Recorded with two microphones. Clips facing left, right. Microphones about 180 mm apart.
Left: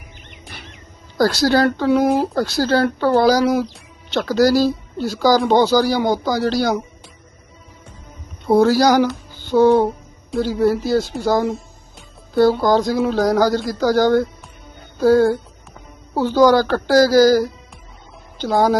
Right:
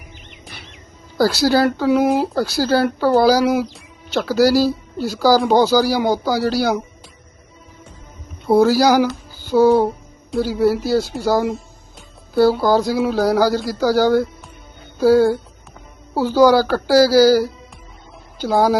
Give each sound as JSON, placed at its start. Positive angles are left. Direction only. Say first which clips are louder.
{"t": 0.4, "sound": "bird", "louder": "left 2 dB", "side_deg": 50}
{"t": 1.2, "sound": "speech", "louder": "even", "side_deg": -5}
{"t": 8.4, "sound": "a woman's voice", "louder": "even", "side_deg": -5}